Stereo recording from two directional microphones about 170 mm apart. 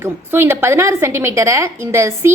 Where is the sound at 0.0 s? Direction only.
15° right (ahead or behind).